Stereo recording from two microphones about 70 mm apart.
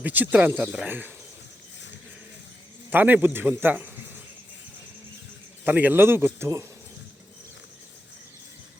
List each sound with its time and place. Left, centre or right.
0.0 s speech: right
2.9 s speech: right
5.6 s speech: right